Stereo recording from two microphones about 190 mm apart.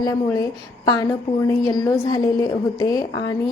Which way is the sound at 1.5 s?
20° left (ahead or behind).